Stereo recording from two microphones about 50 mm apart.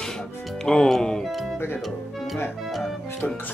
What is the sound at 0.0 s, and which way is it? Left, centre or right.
Music, centre.